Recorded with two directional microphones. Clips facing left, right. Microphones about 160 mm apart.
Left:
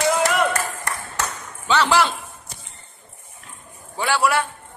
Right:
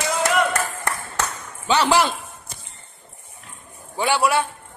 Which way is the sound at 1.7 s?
15° right (ahead or behind).